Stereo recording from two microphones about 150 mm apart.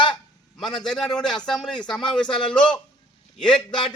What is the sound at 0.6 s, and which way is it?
A man's voice, 5° left (ahead or behind).